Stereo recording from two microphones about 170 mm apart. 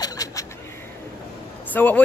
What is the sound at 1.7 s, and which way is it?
Speech, 10° left (ahead or behind).